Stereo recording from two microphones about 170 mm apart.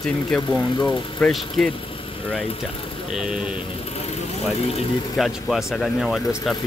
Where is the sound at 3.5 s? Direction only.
30° left (ahead or behind).